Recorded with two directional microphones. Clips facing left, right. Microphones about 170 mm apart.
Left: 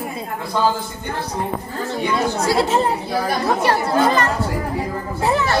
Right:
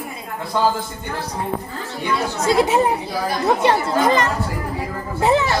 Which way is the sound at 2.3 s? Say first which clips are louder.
Right 4 dB; 20° right (ahead or behind).